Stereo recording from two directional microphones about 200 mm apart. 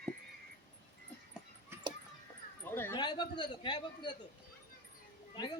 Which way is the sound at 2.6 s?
10° left (ahead or behind).